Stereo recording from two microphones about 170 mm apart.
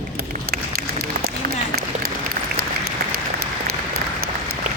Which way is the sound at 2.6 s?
60° right (ahead or behind).